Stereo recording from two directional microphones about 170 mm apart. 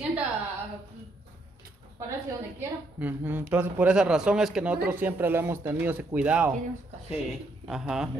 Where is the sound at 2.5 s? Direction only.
10° right (ahead or behind).